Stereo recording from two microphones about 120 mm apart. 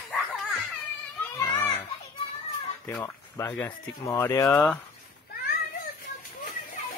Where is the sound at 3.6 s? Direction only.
20° left (ahead or behind).